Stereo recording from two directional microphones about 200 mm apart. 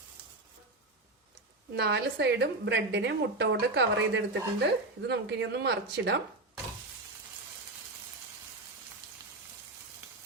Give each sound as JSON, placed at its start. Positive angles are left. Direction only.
{"t": 1.7, "sound": "a woman's voice", "side_deg": -55}